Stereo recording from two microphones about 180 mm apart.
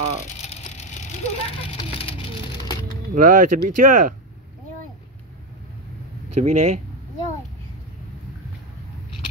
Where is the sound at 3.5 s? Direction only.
50° right (ahead or behind).